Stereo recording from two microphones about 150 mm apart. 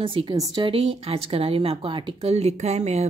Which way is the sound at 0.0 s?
35° right (ahead or behind).